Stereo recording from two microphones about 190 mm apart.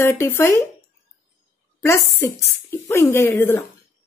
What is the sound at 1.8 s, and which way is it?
Speech, 15° left (ahead or behind).